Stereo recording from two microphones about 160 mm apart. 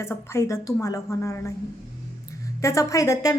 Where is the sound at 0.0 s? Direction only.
15° left (ahead or behind).